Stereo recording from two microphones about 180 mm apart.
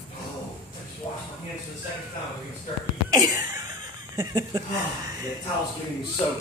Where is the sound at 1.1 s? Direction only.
25° left (ahead or behind).